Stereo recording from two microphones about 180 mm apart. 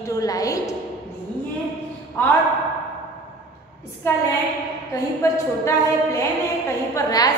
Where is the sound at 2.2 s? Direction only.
10° left (ahead or behind).